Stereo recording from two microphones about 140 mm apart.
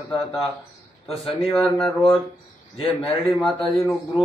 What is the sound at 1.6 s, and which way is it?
Speech, 5° left (ahead or behind).